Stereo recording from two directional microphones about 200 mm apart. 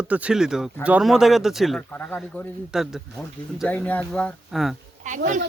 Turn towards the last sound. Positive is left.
turn(degrees=-35)  # may be behind; listen again after turning